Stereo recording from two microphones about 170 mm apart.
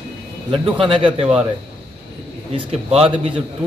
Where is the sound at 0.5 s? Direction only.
30° right (ahead or behind).